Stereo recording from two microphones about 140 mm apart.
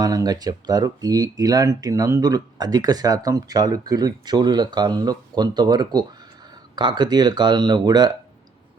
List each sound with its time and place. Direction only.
0.0 s speech: 30° right (ahead or behind)